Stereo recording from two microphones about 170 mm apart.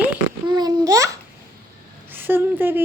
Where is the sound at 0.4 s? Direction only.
25° right (ahead or behind).